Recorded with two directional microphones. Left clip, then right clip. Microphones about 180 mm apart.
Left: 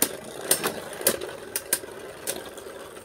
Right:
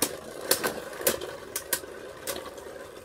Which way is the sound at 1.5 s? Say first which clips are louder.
Left 1 dB; 15° left (ahead or behind).